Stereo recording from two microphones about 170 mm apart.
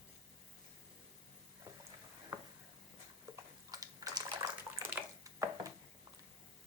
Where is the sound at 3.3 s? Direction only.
15° right (ahead or behind).